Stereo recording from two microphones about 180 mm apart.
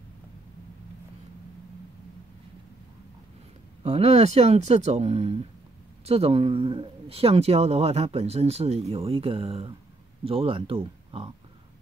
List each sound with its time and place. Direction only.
3.8 s speech: 35° right (ahead or behind)